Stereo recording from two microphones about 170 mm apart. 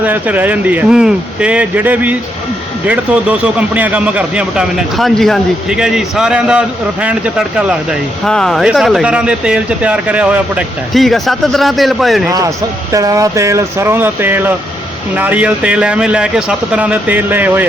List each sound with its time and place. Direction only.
0.0 s a man's voice: 10° right (ahead or behind)
12.3 s speech: 20° right (ahead or behind)